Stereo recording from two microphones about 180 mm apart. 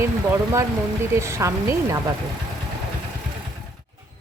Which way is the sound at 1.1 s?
15° right (ahead or behind).